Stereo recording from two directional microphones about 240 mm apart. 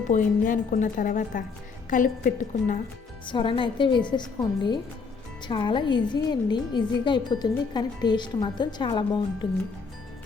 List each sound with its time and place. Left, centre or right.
0.1 s speech: left
3.2 s a woman's voice: left